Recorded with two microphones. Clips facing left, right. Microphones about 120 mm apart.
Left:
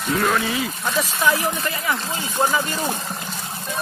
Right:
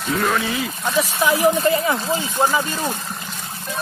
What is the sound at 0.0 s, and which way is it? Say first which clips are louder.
Speech: even; centre (ahead or behind).